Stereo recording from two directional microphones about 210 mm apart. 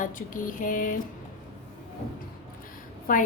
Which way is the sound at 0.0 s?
40° left (ahead or behind).